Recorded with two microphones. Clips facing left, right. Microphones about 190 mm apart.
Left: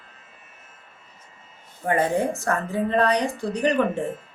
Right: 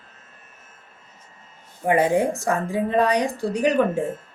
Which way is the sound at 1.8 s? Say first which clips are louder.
Right 3 dB; 10° right (ahead or behind).